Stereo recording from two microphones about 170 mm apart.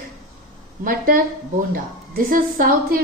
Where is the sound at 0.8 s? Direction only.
55° right (ahead or behind).